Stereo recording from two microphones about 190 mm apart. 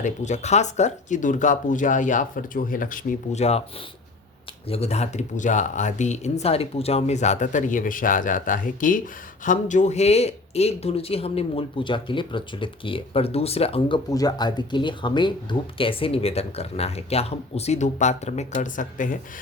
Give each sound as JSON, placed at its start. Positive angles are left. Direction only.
{"t": 0.0, "sound": "speech", "side_deg": 35}
{"t": 4.7, "sound": "speech", "side_deg": 35}